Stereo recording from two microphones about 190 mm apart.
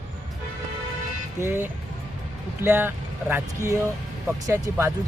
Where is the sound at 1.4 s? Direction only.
10° right (ahead or behind).